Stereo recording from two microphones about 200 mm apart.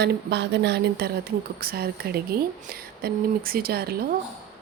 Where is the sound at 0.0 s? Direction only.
60° right (ahead or behind).